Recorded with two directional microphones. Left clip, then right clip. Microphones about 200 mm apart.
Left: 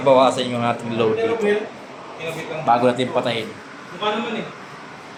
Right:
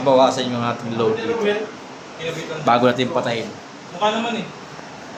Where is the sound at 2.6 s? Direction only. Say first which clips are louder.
Right 1 dB; 30° right (ahead or behind).